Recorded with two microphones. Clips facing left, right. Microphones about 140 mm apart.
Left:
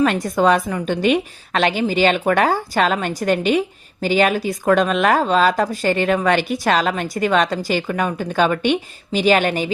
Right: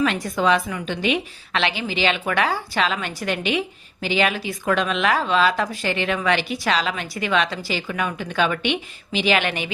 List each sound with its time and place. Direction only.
0.0 s a woman's voice: 45° left (ahead or behind)